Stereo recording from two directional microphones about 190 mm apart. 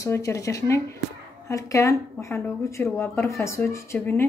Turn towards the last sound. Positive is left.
turn(degrees=10)  # may be behind; listen again after turning